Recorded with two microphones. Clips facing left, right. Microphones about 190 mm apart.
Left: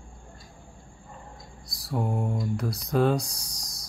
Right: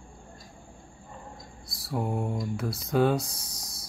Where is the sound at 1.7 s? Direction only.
Centre (ahead or behind).